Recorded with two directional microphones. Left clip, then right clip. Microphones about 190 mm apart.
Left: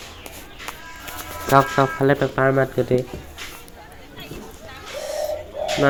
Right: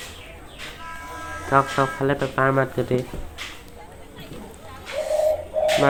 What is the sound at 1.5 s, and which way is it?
Speech, 25° left (ahead or behind).